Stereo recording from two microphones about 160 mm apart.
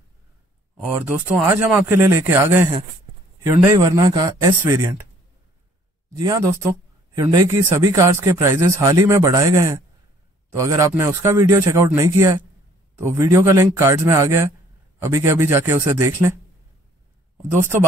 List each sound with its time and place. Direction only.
0.7 s speech: 10° right (ahead or behind)
3.5 s speech: 15° right (ahead or behind)
6.1 s speech: 20° right (ahead or behind)